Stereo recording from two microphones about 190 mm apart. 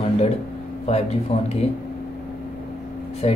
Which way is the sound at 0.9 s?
35° left (ahead or behind).